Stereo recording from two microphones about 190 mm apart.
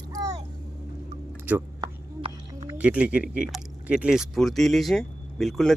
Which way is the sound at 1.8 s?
20° right (ahead or behind).